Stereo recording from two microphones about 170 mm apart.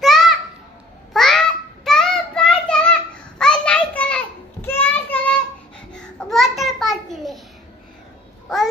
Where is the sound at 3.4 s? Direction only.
5° left (ahead or behind).